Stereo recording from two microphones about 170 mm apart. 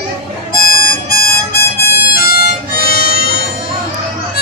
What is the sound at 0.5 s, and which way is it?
Harmonica, 60° left (ahead or behind).